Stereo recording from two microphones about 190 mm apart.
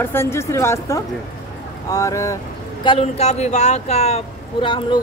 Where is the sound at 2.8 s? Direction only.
30° left (ahead or behind).